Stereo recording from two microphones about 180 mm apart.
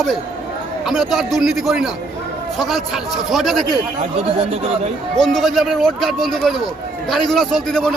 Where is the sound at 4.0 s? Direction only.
35° right (ahead or behind).